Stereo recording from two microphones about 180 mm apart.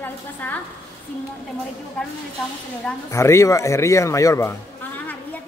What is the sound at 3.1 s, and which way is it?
A man's voice, 15° left (ahead or behind).